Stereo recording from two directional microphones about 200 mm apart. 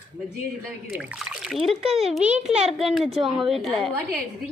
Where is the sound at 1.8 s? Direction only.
30° right (ahead or behind).